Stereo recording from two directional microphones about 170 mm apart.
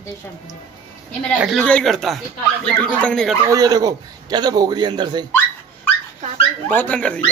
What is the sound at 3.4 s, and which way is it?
A man's voice, 20° right (ahead or behind).